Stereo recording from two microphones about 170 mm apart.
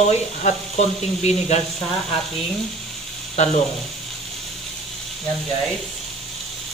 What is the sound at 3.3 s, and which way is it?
Speech, 45° left (ahead or behind).